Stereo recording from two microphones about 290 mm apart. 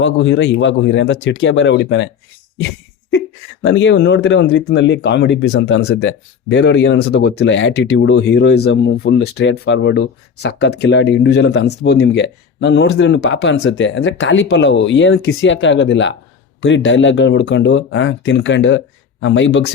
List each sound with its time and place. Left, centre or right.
0.0 s speech: left